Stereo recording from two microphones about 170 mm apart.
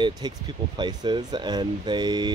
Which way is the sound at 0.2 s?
25° right (ahead or behind).